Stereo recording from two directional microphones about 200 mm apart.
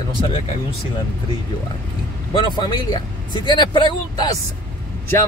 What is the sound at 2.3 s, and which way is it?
Speech, 20° left (ahead or behind).